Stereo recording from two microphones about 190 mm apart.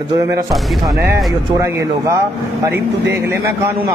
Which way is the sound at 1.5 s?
15° right (ahead or behind).